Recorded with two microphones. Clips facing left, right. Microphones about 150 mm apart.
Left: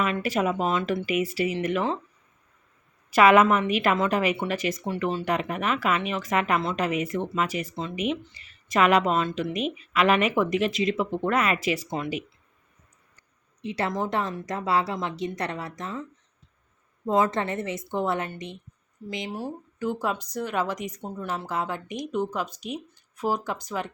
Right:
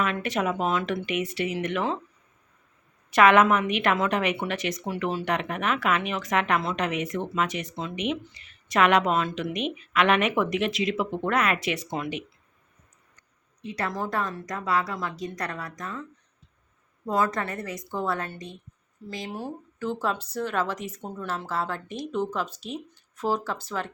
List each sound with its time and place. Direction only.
0.0 s speech: 5° left (ahead or behind)
3.1 s speech: 5° left (ahead or behind)
4.9 s speech: 5° right (ahead or behind)
13.6 s speech: 25° left (ahead or behind)
17.1 s speech: 25° left (ahead or behind)